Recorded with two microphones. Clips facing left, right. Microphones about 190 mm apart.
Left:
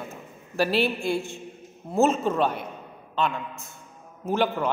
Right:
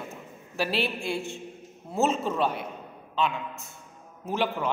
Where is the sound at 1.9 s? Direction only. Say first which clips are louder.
Left 4 dB; 50° left (ahead or behind).